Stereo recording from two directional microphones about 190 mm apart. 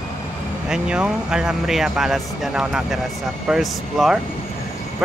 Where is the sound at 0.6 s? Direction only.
5° right (ahead or behind).